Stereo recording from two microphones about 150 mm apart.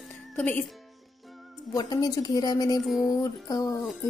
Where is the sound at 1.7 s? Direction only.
25° left (ahead or behind).